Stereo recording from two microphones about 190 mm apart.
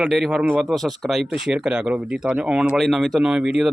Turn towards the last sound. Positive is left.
turn(degrees=-5)  # may be behind; listen again after turning